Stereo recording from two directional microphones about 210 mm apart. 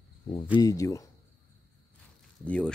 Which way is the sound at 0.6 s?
15° left (ahead or behind).